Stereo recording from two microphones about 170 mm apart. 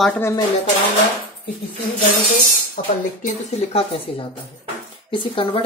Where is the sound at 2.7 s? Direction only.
50° left (ahead or behind); by 5.6 s 30° left (ahead or behind).